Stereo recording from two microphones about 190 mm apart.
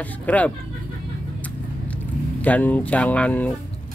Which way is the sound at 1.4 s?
10° left (ahead or behind).